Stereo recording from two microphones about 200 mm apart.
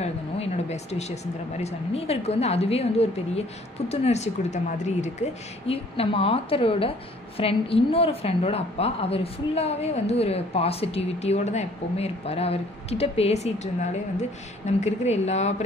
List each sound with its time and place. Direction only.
0.0 s speech: 35° left (ahead or behind)
14.8 s speech: 35° left (ahead or behind)